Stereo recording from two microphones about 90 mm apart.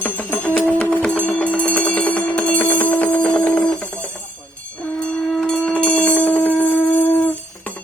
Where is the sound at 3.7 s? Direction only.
10° left (ahead or behind).